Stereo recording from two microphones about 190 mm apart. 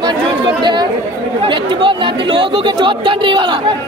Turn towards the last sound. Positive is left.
turn(degrees=-25)  # may be behind; listen again after turning